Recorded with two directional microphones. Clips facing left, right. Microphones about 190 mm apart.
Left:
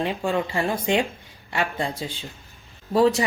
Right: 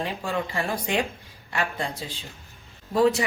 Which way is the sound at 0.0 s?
25° left (ahead or behind).